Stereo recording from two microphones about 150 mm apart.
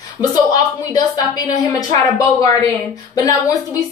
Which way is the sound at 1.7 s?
25° left (ahead or behind).